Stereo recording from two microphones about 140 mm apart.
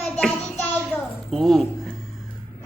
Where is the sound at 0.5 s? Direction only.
10° left (ahead or behind).